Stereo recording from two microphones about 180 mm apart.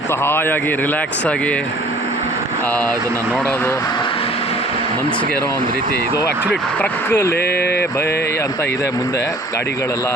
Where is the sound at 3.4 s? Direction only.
10° left (ahead or behind); by 4.5 s 30° left (ahead or behind).